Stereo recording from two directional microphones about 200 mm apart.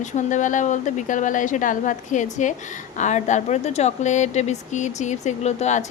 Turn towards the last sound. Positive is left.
turn(degrees=35)  # may be behind; listen again after turning